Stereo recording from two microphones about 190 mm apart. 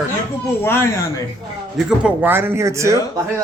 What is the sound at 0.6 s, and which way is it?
Speech, 15° left (ahead or behind).